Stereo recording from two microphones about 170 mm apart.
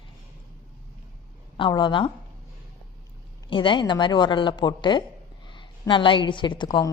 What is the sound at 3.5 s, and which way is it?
A woman's voice, 30° left (ahead or behind).